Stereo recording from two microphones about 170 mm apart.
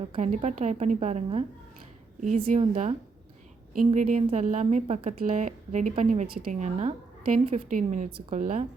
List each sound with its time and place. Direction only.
0.0 s a woman's voice: 35° right (ahead or behind)
2.6 s a woman's voice: 35° right (ahead or behind)
3.8 s a woman's voice: 50° right (ahead or behind)
6.2 s a woman's voice: 60° right (ahead or behind)